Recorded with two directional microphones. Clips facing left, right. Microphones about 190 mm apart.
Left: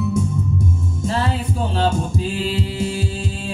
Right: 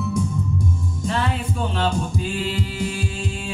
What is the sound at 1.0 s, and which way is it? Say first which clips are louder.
Music: left 2 dB; 35° left (ahead or behind).